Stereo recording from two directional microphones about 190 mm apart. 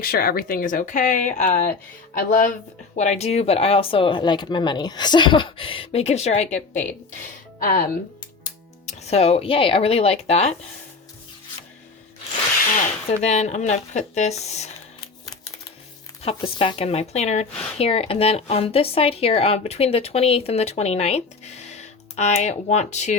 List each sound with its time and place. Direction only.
0.0 s speech: 50° left (ahead or behind)
7.6 s speech: 50° left (ahead or behind)
8.9 s speech: 35° left (ahead or behind)
13.1 s speech: 35° left (ahead or behind)
16.2 s speech: 30° left (ahead or behind)